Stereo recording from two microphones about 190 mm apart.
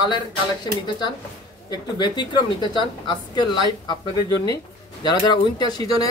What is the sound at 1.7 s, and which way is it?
A woman's voice, 25° left (ahead or behind).